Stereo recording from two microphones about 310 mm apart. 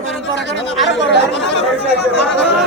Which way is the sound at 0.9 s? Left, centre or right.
Left.